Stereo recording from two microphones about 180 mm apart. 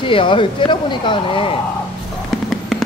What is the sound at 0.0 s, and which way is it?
Speech, 30° left (ahead or behind).